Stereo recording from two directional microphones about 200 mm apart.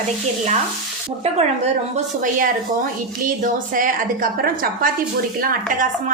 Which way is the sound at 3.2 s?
45° right (ahead or behind).